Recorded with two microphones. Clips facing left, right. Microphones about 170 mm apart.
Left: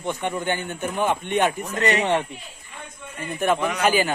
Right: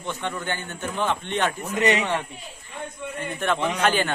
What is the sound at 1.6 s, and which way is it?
Speech, 15° right (ahead or behind).